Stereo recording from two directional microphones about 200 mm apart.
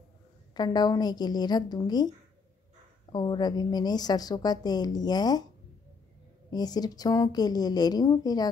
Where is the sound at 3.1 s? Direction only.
20° left (ahead or behind).